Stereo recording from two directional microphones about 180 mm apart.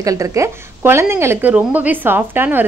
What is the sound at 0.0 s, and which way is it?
A woman's voice, 20° right (ahead or behind).